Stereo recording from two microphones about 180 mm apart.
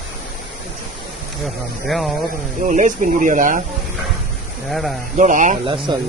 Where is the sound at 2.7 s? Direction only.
45° right (ahead or behind).